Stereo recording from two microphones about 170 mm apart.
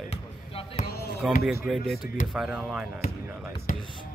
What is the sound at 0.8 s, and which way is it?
Speech, 65° left (ahead or behind).